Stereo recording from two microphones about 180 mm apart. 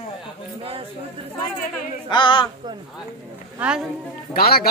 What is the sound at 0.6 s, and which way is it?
Speech, 30° right (ahead or behind).